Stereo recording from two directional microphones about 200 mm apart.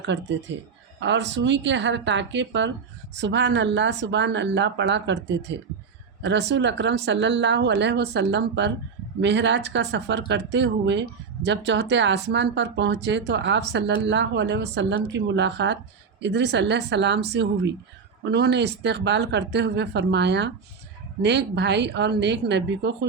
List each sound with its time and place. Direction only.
0.0 s speech: 65° right (ahead or behind)